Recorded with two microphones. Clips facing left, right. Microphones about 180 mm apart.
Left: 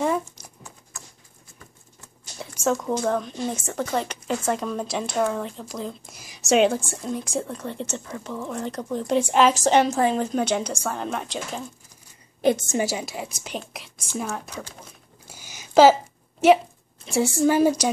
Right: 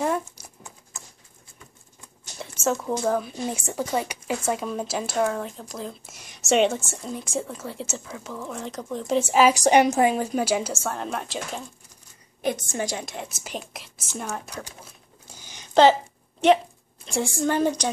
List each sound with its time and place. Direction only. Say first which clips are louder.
0.0 s a sound: left 1 dB; centre (ahead or behind)
2.6 s speech: left 1 dB; 5° right (ahead or behind)
12.4 s a woman's voice: left 6 dB; 25° left (ahead or behind)
12.7 s speech: left 4 dB; 5° left (ahead or behind)
15.2 s a sound: left 2 dB; 10° left (ahead or behind)
17.0 s a woman's voice: left 5 dB; 5° left (ahead or behind)